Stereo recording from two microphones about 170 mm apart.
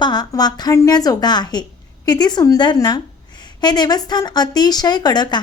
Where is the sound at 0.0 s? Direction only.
25° left (ahead or behind).